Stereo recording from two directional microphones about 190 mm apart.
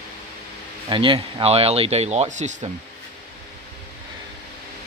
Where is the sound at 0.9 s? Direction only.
25° right (ahead or behind).